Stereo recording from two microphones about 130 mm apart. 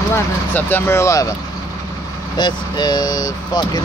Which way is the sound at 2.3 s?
35° left (ahead or behind).